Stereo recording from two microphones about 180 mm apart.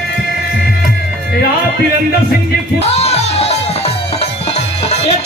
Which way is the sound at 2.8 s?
35° left (ahead or behind).